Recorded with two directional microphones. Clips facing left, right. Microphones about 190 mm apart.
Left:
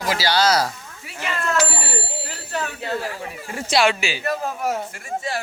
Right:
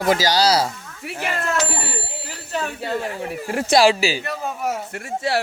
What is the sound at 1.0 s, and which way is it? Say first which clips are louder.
Speech: right 4 dB; 60° right (ahead or behind).